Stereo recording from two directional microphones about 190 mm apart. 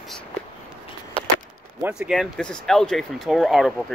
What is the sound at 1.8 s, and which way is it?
Speech, 5° right (ahead or behind).